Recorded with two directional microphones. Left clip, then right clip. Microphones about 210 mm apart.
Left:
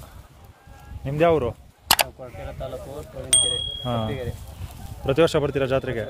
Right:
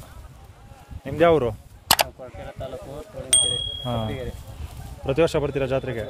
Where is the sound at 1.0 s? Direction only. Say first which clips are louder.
Right 1 dB; 15° right (ahead or behind).